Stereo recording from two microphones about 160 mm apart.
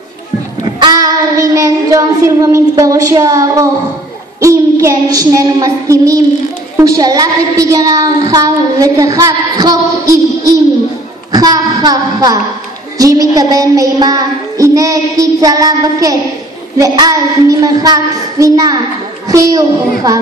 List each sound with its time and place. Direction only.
0.7 s child singing: 25° right (ahead or behind)
4.4 s a woman's voice: 20° right (ahead or behind)
6.8 s child singing: 20° right (ahead or behind)
19.2 s a woman's voice: 20° right (ahead or behind)